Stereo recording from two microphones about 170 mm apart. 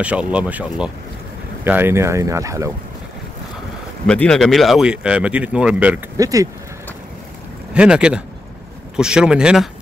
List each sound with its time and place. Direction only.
0.0 s speech: 5° right (ahead or behind)
4.1 s speech: 5° left (ahead or behind)
6.1 s speech: 20° right (ahead or behind)
7.7 s speech: 5° right (ahead or behind)